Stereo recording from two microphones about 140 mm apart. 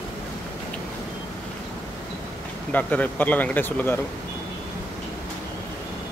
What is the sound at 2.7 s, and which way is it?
Speech, 10° left (ahead or behind).